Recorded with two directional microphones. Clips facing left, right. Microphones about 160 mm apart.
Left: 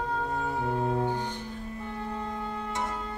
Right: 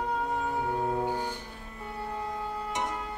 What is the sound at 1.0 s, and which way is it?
Music, 10° right (ahead or behind).